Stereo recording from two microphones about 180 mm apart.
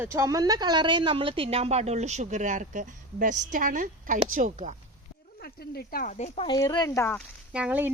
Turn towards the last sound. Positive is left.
turn(degrees=-10)  # may be behind; listen again after turning